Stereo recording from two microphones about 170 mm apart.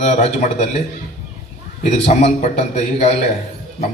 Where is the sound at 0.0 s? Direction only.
40° left (ahead or behind).